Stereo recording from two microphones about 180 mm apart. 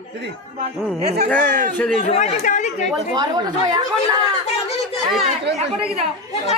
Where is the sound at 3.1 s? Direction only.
25° right (ahead or behind).